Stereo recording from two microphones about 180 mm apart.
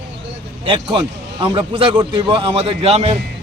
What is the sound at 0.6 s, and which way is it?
A man's voice, 30° right (ahead or behind).